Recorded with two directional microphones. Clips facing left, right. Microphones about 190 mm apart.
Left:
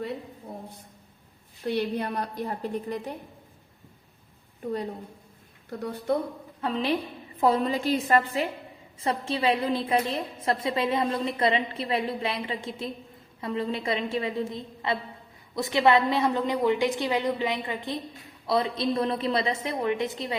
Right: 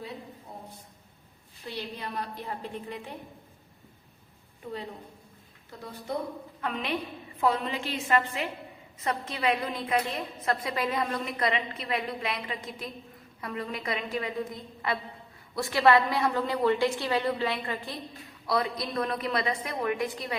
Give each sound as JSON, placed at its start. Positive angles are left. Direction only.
{"t": 1.6, "sound": "a woman's voice", "side_deg": 55}
{"t": 6.6, "sound": "a woman's voice", "side_deg": 30}